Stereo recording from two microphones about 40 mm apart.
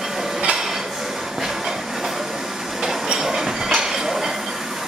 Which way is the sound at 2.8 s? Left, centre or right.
Centre.